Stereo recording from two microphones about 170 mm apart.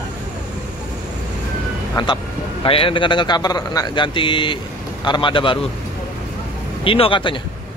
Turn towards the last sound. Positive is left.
turn(degrees=30)  # may be behind; listen again after turning